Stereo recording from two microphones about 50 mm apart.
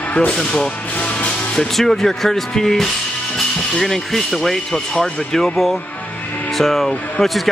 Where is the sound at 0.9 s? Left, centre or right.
Left.